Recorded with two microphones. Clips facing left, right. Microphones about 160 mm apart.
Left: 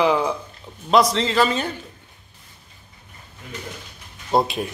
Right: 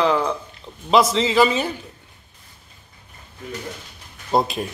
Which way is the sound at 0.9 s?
Centre (ahead or behind).